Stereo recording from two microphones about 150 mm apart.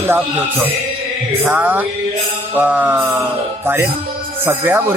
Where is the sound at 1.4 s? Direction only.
10° right (ahead or behind).